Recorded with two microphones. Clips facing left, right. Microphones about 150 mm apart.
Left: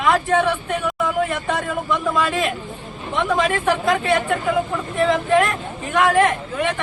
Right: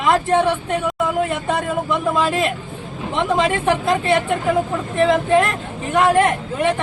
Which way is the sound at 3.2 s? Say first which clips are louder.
Right 1 dB; 25° right (ahead or behind).